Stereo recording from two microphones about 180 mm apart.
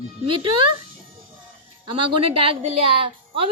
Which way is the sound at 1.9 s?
30° right (ahead or behind).